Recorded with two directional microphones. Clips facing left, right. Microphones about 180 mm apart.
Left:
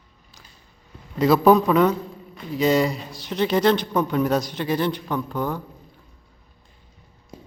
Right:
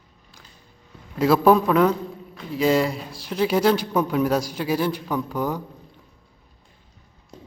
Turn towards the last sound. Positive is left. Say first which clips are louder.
# left 1 dB
turn(degrees=10)  # may be behind; listen again after turning